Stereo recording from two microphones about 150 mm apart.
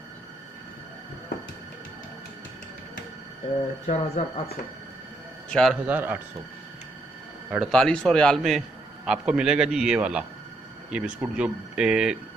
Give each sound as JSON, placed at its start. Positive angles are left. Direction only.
{"t": 3.8, "sound": "speech", "side_deg": 55}
{"t": 5.5, "sound": "a man's voice", "side_deg": 0}
{"t": 5.9, "sound": "a man's voice", "side_deg": -10}
{"t": 7.5, "sound": "a man's voice", "side_deg": 0}